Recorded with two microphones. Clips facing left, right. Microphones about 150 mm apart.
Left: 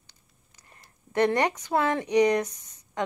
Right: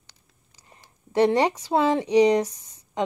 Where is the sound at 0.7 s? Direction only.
15° right (ahead or behind).